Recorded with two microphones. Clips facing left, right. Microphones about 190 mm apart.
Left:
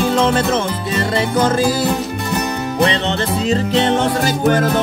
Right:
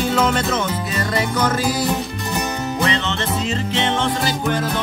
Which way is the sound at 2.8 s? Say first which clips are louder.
Left 6 dB; 35° left (ahead or behind).